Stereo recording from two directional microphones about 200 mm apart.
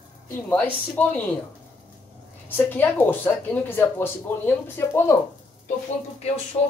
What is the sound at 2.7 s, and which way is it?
Speech, 10° left (ahead or behind).